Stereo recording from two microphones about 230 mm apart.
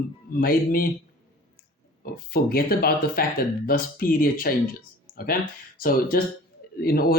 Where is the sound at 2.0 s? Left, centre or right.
Left.